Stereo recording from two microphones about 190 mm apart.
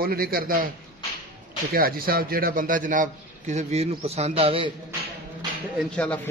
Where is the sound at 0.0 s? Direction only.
50° right (ahead or behind).